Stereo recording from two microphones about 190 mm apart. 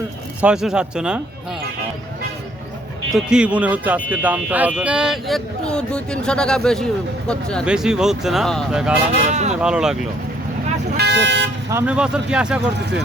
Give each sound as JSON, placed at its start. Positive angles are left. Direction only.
{"t": 0.4, "sound": "speech", "side_deg": -5}
{"t": 3.2, "sound": "speech", "side_deg": -5}
{"t": 9.1, "sound": "speech", "side_deg": -35}
{"t": 9.6, "sound": "speech", "side_deg": -5}
{"t": 10.9, "sound": "speech", "side_deg": -65}
{"t": 11.7, "sound": "speech", "side_deg": -10}